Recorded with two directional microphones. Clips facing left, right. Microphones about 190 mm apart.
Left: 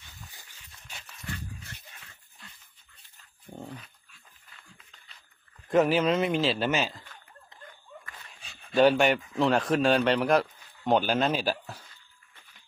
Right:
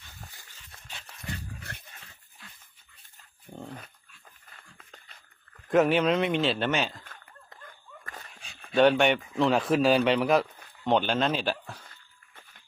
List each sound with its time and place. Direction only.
1.5 s dog: 60° right (ahead or behind)
4.4 s a sound: 45° right (ahead or behind)
5.6 s a man's voice: centre (ahead or behind)
7.0 s a sound: 50° right (ahead or behind)
8.0 s dog: 45° right (ahead or behind)
8.7 s a man's voice: centre (ahead or behind)